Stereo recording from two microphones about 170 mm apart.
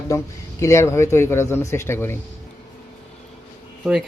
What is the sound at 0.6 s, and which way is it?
Speech, 15° left (ahead or behind).